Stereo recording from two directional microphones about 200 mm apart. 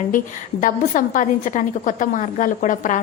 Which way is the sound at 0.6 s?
40° left (ahead or behind).